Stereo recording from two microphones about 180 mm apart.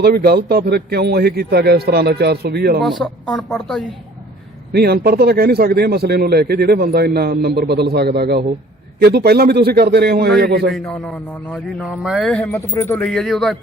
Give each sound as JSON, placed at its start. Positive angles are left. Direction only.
{"t": 0.0, "sound": "speech", "side_deg": -60}
{"t": 2.8, "sound": "speech", "side_deg": 0}
{"t": 4.7, "sound": "speech", "side_deg": -60}
{"t": 10.7, "sound": "speech", "side_deg": 5}
{"t": 11.8, "sound": "speech", "side_deg": -5}